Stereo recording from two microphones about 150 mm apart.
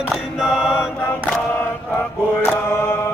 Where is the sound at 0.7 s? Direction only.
15° left (ahead or behind).